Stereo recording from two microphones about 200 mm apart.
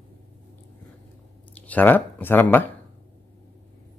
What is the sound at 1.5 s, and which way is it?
Speech, 10° left (ahead or behind).